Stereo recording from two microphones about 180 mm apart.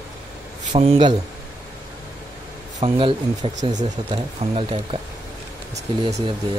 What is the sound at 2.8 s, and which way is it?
Speech, 30° right (ahead or behind).